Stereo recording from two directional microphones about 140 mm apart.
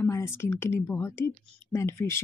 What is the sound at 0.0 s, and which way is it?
Speech, 20° left (ahead or behind).